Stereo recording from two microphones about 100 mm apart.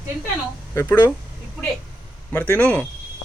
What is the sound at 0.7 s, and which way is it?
Speech, 20° left (ahead or behind).